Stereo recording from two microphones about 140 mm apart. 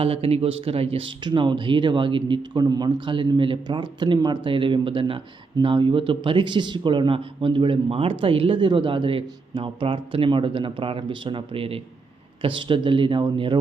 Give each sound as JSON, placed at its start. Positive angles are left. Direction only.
{"t": 0.0, "sound": "speech", "side_deg": -45}